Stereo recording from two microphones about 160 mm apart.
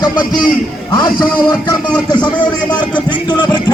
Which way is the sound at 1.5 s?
25° left (ahead or behind).